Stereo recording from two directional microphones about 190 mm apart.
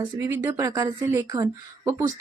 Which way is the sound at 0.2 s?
15° right (ahead or behind).